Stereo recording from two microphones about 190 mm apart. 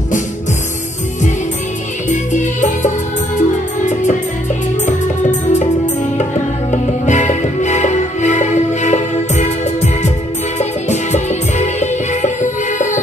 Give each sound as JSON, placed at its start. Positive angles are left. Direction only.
{"t": 2.0, "sound": "music", "side_deg": 40}
{"t": 6.7, "sound": "music", "side_deg": 40}
{"t": 10.6, "sound": "music", "side_deg": 35}